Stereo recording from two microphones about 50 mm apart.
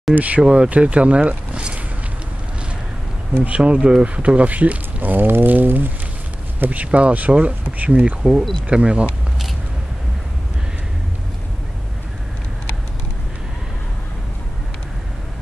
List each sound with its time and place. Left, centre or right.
0.1 s speech: right
3.4 s speech: right
5.1 s a sound: right
6.6 s speech: right